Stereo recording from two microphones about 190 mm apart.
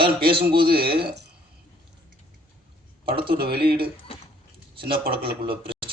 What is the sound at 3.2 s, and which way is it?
Speech, 55° right (ahead or behind).